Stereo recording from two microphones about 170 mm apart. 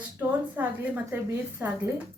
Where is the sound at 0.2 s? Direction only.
10° right (ahead or behind).